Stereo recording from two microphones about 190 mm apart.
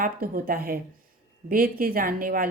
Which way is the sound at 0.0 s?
50° right (ahead or behind).